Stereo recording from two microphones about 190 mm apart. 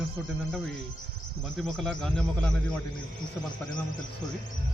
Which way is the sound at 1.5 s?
Centre (ahead or behind).